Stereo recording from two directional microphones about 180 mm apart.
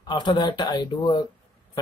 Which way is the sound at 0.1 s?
25° left (ahead or behind).